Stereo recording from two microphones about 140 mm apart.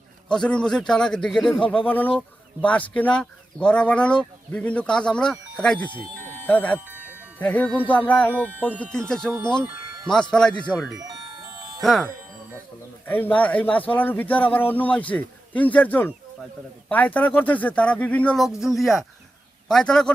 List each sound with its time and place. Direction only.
0.3 s speech: 5° left (ahead or behind)
6.7 s a sound: 10° right (ahead or behind)
7.3 s speech: 10° left (ahead or behind)
10.9 s music: 25° right (ahead or behind)
11.8 s speech: centre (ahead or behind)
13.1 s a man's voice: 15° left (ahead or behind)